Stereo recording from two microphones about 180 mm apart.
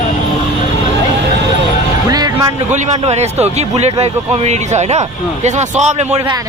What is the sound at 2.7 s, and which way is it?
Speech, 40° right (ahead or behind).